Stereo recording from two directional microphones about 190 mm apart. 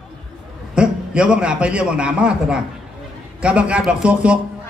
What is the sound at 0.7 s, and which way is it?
A man's voice, 5° right (ahead or behind).